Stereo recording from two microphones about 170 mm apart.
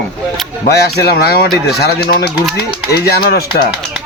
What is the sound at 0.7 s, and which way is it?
A man's voice, 70° left (ahead or behind).